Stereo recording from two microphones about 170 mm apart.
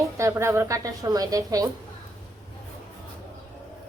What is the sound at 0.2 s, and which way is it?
A woman's voice, 15° right (ahead or behind).